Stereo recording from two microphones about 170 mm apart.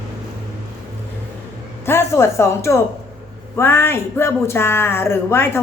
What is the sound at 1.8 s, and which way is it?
Speech, 15° left (ahead or behind).